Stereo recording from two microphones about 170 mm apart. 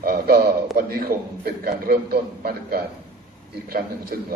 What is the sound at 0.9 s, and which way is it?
A man's voice, 60° right (ahead or behind).